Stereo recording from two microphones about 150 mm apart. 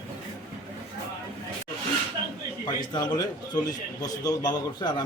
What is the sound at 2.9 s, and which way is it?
A man's voice, 30° left (ahead or behind).